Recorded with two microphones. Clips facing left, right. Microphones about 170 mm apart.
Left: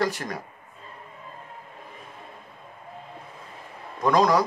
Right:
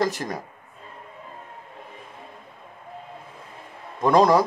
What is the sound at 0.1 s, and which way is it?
Speech, 45° right (ahead or behind).